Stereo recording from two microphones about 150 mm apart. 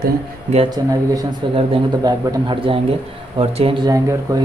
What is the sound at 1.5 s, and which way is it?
A man's voice, 35° right (ahead or behind).